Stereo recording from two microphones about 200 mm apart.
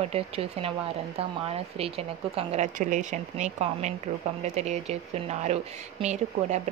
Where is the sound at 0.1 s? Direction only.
30° right (ahead or behind).